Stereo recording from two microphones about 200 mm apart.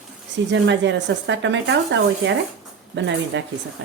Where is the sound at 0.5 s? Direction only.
65° right (ahead or behind).